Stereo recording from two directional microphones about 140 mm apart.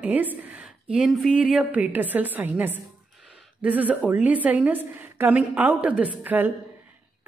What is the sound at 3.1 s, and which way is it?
A woman's voice, centre (ahead or behind).